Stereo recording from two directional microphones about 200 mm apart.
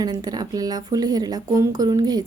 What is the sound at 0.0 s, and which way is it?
Speech, 20° right (ahead or behind).